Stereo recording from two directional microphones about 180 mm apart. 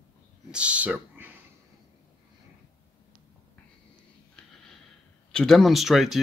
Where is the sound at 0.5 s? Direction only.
5° right (ahead or behind).